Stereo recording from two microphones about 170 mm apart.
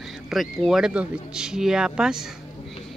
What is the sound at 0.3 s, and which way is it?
Speech, centre (ahead or behind).